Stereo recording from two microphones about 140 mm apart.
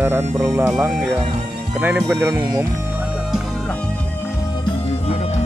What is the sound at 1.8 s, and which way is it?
Speech, 5° right (ahead or behind).